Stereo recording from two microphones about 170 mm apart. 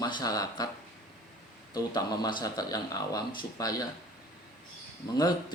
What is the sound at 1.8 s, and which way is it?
Speech, 25° left (ahead or behind).